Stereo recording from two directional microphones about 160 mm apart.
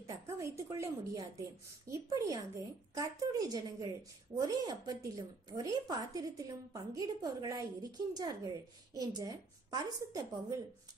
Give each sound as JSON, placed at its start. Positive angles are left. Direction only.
{"t": 0.0, "sound": "a woman's voice", "side_deg": -20}